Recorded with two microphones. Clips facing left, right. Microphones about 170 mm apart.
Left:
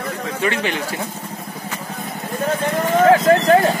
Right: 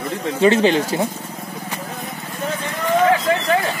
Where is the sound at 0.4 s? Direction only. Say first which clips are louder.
Right 8 dB; 30° right (ahead or behind).